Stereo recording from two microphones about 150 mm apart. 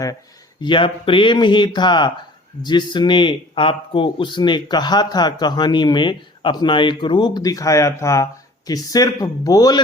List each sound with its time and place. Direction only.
0.6 s speech: 35° left (ahead or behind)